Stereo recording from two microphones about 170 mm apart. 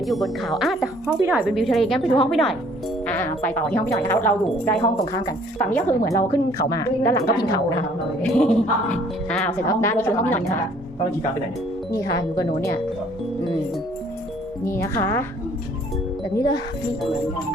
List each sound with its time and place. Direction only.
0.0 s speech: centre (ahead or behind)
3.1 s speech: 10° left (ahead or behind)
5.6 s speech: 10° left (ahead or behind)
8.3 s speech: 5° left (ahead or behind)
11.9 s speech: 20° left (ahead or behind)
14.6 s speech: 15° left (ahead or behind)
16.3 s speech: 25° left (ahead or behind)